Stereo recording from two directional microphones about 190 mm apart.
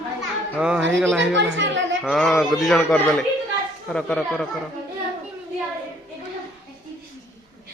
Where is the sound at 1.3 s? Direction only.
75° right (ahead or behind).